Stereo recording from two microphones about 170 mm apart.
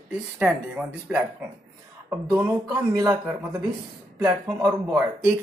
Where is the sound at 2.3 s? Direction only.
15° right (ahead or behind).